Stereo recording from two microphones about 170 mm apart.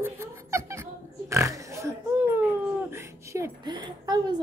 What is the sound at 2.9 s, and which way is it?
A woman's voice, 15° right (ahead or behind).